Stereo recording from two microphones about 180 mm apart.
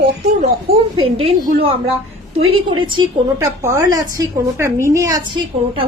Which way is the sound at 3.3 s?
15° right (ahead or behind).